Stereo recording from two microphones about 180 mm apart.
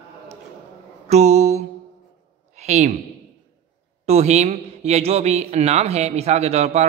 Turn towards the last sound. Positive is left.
turn(degrees=-35)  # may be behind; listen again after turning